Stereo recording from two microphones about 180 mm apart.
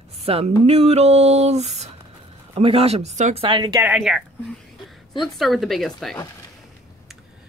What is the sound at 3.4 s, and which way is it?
Speech, 25° right (ahead or behind).